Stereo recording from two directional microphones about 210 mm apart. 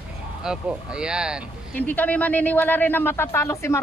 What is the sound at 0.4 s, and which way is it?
Speech, 5° right (ahead or behind).